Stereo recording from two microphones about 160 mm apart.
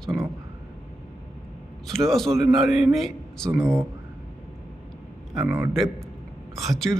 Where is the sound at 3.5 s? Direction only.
15° right (ahead or behind).